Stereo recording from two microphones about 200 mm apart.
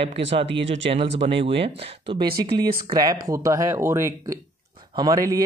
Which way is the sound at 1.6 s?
25° right (ahead or behind).